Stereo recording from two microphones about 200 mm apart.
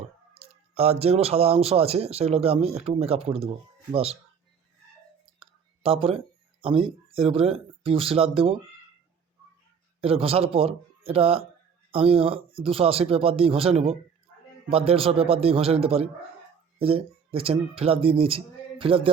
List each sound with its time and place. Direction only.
0.3 s a man's voice: 30° right (ahead or behind)
5.4 s speech: 25° right (ahead or behind)
10.0 s a man's voice: 30° right (ahead or behind)